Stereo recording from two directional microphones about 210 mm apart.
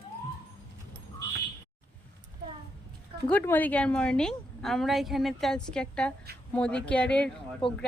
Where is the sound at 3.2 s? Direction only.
10° left (ahead or behind).